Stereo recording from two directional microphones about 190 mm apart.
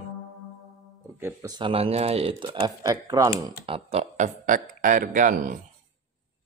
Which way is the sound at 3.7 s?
30° right (ahead or behind).